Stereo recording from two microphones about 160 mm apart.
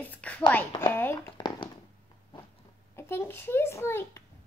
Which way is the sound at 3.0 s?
15° left (ahead or behind).